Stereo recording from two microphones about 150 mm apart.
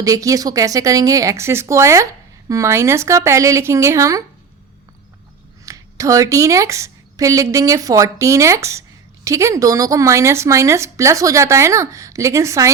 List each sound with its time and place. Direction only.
0.0 s a woman's voice: 20° right (ahead or behind)
5.6 s a woman's voice: 20° right (ahead or behind)